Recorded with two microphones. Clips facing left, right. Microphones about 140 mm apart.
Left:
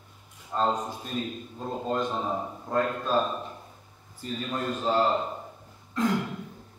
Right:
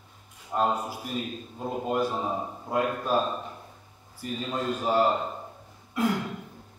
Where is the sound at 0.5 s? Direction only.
10° right (ahead or behind).